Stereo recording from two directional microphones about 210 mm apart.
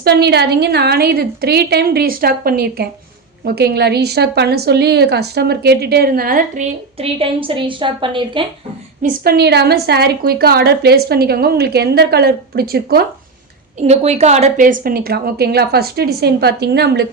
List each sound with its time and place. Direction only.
0.0 s a woman's voice: 50° right (ahead or behind)
7.0 s a woman's voice: 25° right (ahead or behind)
9.0 s a woman's voice: 45° right (ahead or behind)
13.8 s a woman's voice: 30° right (ahead or behind); by 17.1 s 50° right (ahead or behind)